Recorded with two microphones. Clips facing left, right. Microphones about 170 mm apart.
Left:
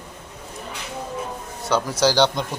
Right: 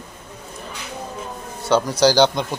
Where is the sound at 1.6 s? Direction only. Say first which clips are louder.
Right 4 dB; centre (ahead or behind).